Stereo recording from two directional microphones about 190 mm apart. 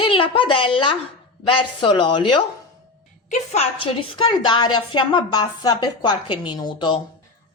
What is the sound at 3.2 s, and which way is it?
A woman's voice, 35° left (ahead or behind).